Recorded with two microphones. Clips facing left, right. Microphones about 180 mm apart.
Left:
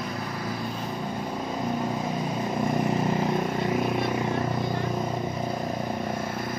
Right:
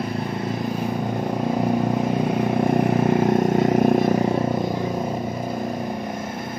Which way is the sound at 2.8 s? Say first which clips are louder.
Right 6 dB; 55° right (ahead or behind).